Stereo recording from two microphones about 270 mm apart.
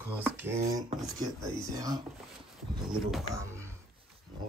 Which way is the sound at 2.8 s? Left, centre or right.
Centre.